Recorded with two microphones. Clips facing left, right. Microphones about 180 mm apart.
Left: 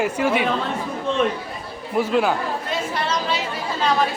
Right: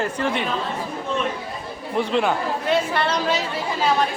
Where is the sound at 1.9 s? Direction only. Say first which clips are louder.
Left 2 dB; 5° left (ahead or behind).